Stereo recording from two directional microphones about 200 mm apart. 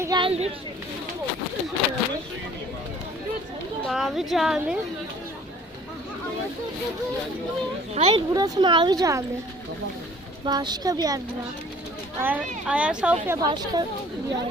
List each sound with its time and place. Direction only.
0.0 s speech: 20° right (ahead or behind)
3.8 s a woman's voice: centre (ahead or behind)
7.9 s speech: 25° right (ahead or behind)
10.4 s speech: 20° right (ahead or behind)
12.2 s speech: 5° right (ahead or behind)